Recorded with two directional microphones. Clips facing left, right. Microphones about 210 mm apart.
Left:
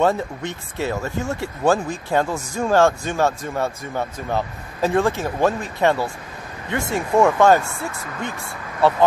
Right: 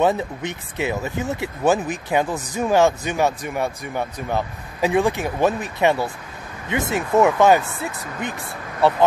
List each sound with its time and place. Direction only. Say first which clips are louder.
0.4 s speech: even; 20° right (ahead or behind)